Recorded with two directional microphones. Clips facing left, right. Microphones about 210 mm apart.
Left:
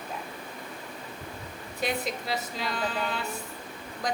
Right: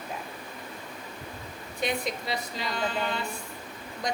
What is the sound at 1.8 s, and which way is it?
A woman's voice, centre (ahead or behind).